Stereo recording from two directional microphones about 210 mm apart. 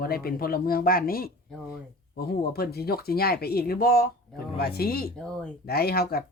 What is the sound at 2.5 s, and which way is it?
Speech, 45° left (ahead or behind).